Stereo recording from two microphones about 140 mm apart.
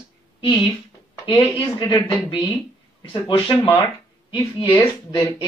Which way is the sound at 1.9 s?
25° left (ahead or behind).